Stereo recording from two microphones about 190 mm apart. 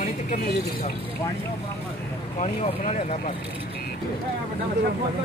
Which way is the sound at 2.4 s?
35° left (ahead or behind).